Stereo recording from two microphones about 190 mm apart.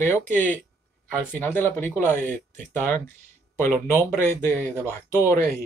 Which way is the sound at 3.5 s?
15° left (ahead or behind).